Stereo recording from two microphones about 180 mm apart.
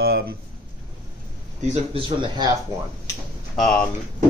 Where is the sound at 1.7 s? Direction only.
30° right (ahead or behind).